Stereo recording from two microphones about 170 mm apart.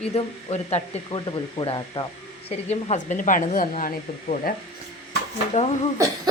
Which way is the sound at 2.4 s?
40° left (ahead or behind).